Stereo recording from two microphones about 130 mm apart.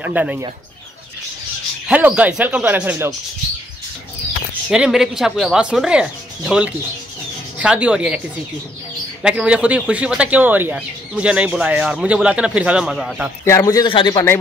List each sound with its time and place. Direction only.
0.0 s speech: 10° right (ahead or behind)
1.9 s speech: 10° right (ahead or behind)
4.6 s speech: 5° right (ahead or behind)
9.2 s speech: 10° right (ahead or behind)
13.5 s a man's voice: 25° left (ahead or behind)